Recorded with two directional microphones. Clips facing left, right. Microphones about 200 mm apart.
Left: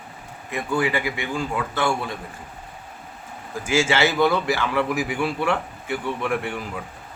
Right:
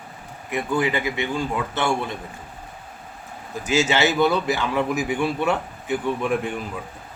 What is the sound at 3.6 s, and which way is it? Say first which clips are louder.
A man's voice: even; 20° right (ahead or behind).